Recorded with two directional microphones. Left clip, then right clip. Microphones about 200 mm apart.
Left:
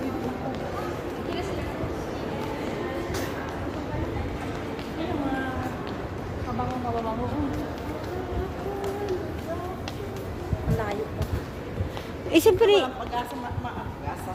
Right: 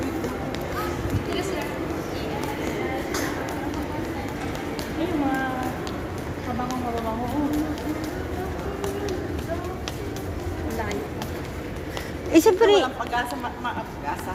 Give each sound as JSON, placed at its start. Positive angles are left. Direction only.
{"t": 12.3, "sound": "speech", "side_deg": 20}